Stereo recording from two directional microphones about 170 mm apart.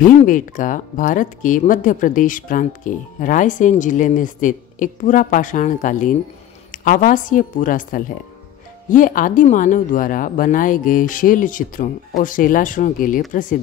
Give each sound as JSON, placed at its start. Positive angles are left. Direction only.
{"t": 0.0, "sound": "speech", "side_deg": 50}